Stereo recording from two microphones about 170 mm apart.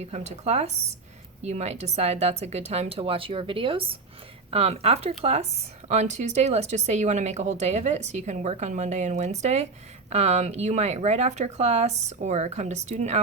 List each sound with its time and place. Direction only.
0.0 s speech: 40° right (ahead or behind)